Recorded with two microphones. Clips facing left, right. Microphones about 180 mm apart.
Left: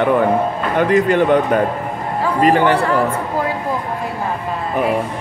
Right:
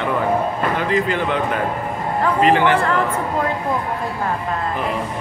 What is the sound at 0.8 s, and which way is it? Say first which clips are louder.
Speech: left 10 dB; 55° left (ahead or behind).